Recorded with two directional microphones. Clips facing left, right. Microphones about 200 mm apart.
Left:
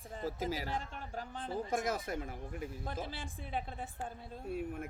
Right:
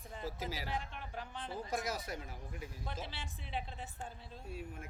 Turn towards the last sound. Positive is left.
turn(degrees=55)  # may be behind; listen again after turning